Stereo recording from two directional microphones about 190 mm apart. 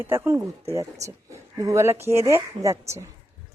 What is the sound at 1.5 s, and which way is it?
Speech, 15° right (ahead or behind).